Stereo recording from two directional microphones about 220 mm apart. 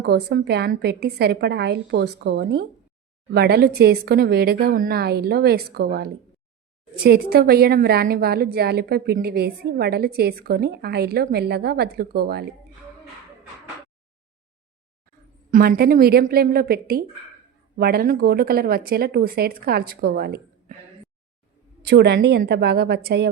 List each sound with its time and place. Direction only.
0.0 s a woman's voice: 45° right (ahead or behind)
15.4 s a woman's voice: 40° right (ahead or behind)
21.8 s a woman's voice: 50° right (ahead or behind)